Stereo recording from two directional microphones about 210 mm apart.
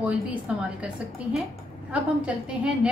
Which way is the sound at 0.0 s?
5° right (ahead or behind).